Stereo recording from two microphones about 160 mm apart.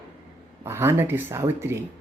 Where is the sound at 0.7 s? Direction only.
15° right (ahead or behind).